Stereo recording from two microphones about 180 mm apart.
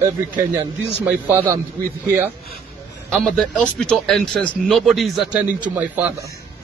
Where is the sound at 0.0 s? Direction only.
15° right (ahead or behind).